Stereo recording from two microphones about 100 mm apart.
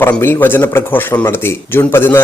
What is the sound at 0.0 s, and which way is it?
Speech, 25° left (ahead or behind).